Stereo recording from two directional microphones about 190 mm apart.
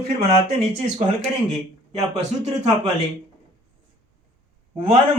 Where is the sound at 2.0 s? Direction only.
35° right (ahead or behind).